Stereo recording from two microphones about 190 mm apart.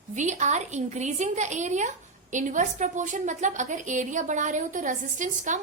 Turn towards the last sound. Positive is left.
turn(degrees=-40)  # may be behind; listen again after turning